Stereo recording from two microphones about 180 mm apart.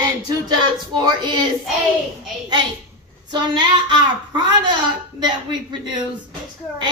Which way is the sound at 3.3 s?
25° right (ahead or behind).